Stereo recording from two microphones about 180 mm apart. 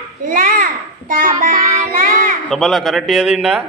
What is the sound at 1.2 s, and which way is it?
Music, 45° right (ahead or behind).